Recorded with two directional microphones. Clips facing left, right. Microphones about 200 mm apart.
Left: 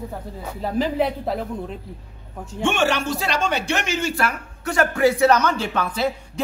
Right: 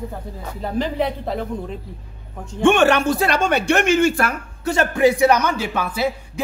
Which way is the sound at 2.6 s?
55° right (ahead or behind).